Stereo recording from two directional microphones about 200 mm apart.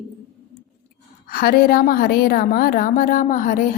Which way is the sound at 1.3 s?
50° left (ahead or behind).